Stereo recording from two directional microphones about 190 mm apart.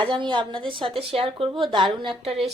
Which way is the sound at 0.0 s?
25° right (ahead or behind).